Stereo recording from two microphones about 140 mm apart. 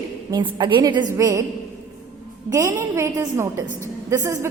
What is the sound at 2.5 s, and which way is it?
A woman's voice, 20° right (ahead or behind).